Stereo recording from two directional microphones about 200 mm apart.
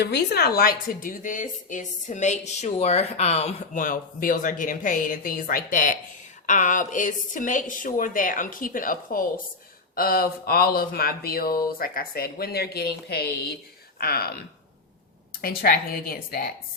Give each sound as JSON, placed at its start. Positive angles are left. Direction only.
{"t": 0.0, "sound": "a woman's voice", "side_deg": 55}
{"t": 15.4, "sound": "a woman's voice", "side_deg": 45}